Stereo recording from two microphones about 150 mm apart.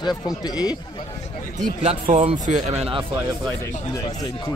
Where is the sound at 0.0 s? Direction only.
25° left (ahead or behind).